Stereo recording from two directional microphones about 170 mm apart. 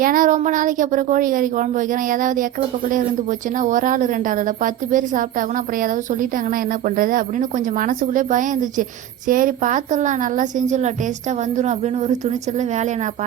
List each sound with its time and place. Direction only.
0.0 s a woman's voice: 55° right (ahead or behind)
3.6 s a woman's voice: 50° right (ahead or behind)